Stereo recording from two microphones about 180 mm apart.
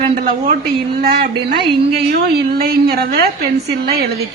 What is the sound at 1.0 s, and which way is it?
A woman's voice, 60° right (ahead or behind).